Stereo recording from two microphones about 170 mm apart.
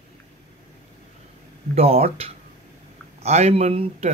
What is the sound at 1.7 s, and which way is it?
A man's voice, 35° right (ahead or behind).